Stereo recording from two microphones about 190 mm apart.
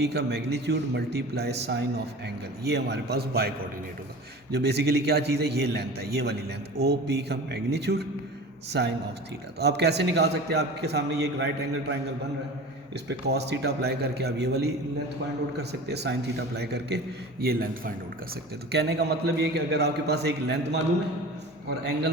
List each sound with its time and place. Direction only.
0.0 s a man's voice: 60° right (ahead or behind)
4.5 s a man's voice: 60° right (ahead or behind)
13.1 s a man's voice: 60° right (ahead or behind)